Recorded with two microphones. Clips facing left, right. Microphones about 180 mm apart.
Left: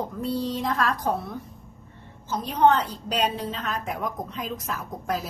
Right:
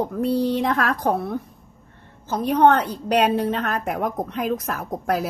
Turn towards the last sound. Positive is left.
turn(degrees=-60)  # may be behind; listen again after turning